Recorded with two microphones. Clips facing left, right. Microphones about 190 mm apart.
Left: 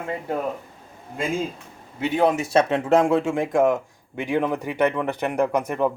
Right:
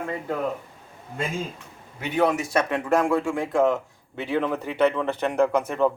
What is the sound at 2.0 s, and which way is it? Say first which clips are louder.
Speech: left 2 dB; 25° left (ahead or behind).